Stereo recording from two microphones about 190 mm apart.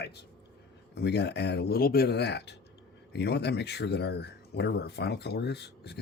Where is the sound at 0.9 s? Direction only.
60° left (ahead or behind).